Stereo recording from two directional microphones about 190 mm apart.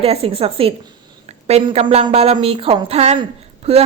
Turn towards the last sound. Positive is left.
turn(degrees=-30)  # may be behind; listen again after turning